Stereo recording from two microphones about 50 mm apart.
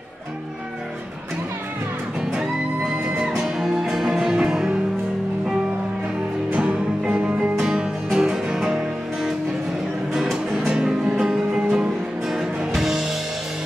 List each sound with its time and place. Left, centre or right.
3.2 s music: centre
6.5 s music: right
7.2 s music: right
7.5 s music: centre
10.7 s music: centre